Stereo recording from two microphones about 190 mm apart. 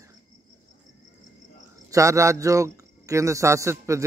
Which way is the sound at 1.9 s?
15° right (ahead or behind).